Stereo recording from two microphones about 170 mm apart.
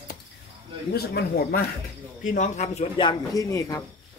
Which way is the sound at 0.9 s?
65° left (ahead or behind).